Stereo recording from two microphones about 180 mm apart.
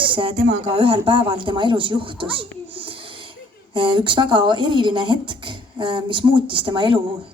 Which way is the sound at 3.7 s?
30° right (ahead or behind).